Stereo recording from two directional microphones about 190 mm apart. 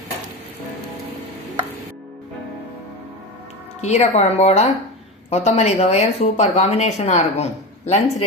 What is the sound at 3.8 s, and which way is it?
Speech, 35° left (ahead or behind).